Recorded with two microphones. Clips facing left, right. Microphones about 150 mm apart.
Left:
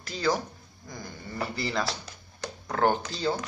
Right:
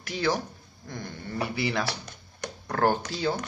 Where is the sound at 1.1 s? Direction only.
Centre (ahead or behind).